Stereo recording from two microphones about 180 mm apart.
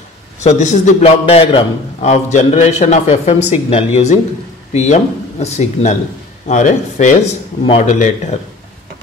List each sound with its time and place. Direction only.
0.4 s a man's voice: 40° left (ahead or behind)